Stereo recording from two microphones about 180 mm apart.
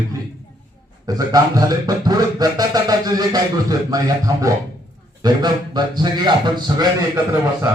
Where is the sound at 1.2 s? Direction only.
20° right (ahead or behind).